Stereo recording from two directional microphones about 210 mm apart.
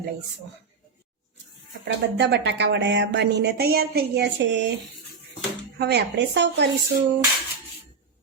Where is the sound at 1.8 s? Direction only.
55° right (ahead or behind).